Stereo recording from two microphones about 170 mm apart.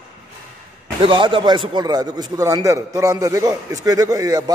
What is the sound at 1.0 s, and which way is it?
A man's voice, 30° right (ahead or behind).